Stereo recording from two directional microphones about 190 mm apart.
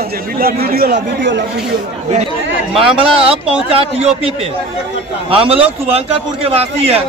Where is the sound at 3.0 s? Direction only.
30° right (ahead or behind).